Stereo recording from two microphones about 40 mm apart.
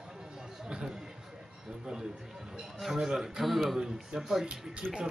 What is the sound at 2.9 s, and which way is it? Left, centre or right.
Speech, centre.